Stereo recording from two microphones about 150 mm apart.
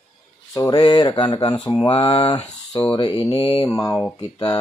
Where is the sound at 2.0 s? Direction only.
35° left (ahead or behind).